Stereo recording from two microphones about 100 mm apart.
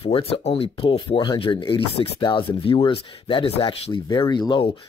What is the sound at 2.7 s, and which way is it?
Speech, 60° left (ahead or behind).